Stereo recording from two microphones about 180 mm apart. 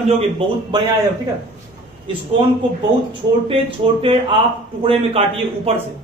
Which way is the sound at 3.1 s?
30° right (ahead or behind).